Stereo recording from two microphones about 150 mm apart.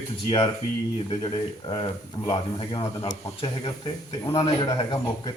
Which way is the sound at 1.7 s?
35° left (ahead or behind).